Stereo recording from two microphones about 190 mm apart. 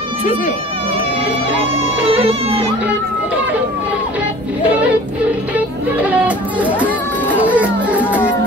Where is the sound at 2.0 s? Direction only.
30° right (ahead or behind).